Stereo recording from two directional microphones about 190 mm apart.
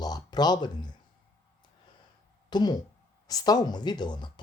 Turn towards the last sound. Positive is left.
turn(degrees=25)  # may be behind; listen again after turning